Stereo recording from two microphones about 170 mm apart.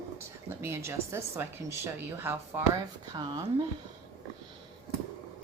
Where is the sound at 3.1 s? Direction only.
25° right (ahead or behind).